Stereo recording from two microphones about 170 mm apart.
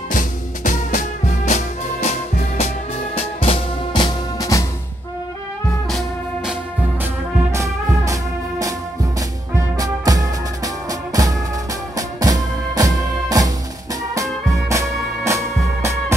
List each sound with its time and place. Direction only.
0.1 s music: 50° left (ahead or behind); by 4.6 s 20° left (ahead or behind)
5.9 s music: centre (ahead or behind)
7.5 s music: 20° right (ahead or behind)
9.8 s music: 20° right (ahead or behind)
14.7 s music: 15° right (ahead or behind)